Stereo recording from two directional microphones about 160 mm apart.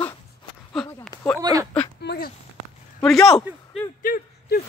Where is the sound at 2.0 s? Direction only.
80° left.